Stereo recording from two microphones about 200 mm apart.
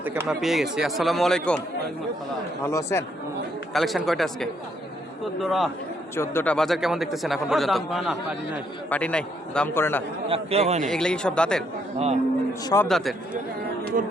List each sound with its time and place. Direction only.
0.0 s a man's voice: 10° right (ahead or behind)
2.6 s a man's voice: 15° left (ahead or behind)
3.7 s a man's voice: centre (ahead or behind)
8.9 s a man's voice: 5° left (ahead or behind)
10.2 s a man's voice: 30° right (ahead or behind)
10.8 s a man's voice: 5° left (ahead or behind)
11.9 s a man's voice: 30° right (ahead or behind)
12.6 s a man's voice: 15° left (ahead or behind)
12.9 s a man's voice: centre (ahead or behind)
14.0 s speech: 45° right (ahead or behind)